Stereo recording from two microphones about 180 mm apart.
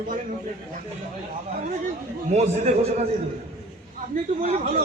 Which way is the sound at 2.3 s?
35° right (ahead or behind).